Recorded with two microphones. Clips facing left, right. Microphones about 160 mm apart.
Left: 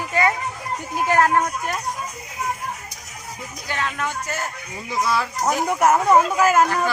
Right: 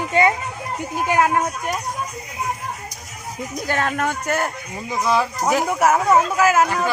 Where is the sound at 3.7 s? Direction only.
50° right (ahead or behind).